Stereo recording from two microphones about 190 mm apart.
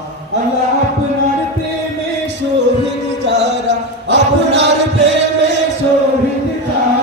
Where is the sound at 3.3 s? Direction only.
65° right (ahead or behind).